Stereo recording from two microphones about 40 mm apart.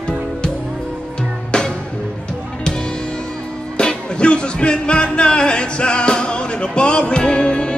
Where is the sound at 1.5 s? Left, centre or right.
Left.